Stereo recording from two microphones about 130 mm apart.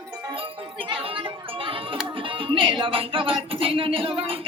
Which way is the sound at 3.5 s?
45° right (ahead or behind).